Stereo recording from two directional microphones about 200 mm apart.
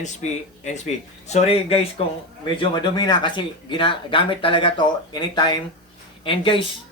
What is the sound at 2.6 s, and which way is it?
Speech, 20° left (ahead or behind).